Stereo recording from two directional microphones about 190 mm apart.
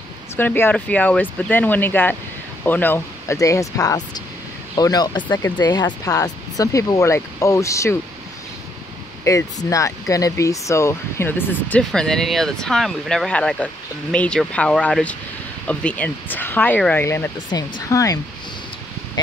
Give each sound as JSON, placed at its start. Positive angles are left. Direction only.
{"t": 0.4, "sound": "speech", "side_deg": 10}
{"t": 9.2, "sound": "speech", "side_deg": 15}